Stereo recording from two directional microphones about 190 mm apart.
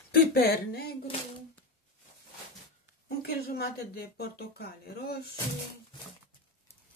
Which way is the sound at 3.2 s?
55° left (ahead or behind).